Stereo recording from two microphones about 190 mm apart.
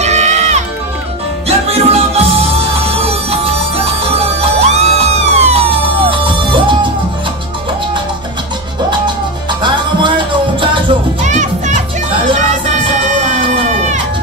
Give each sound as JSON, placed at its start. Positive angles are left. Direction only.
{"t": 0.0, "sound": "music", "side_deg": -35}
{"t": 1.7, "sound": "music", "side_deg": -35}
{"t": 9.6, "sound": "music", "side_deg": -25}
{"t": 11.2, "sound": "music", "side_deg": -40}